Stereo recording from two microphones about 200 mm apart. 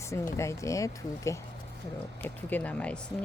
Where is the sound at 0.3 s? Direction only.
15° left (ahead or behind).